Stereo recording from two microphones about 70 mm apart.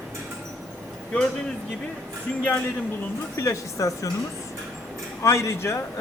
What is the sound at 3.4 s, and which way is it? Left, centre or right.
Speech, left.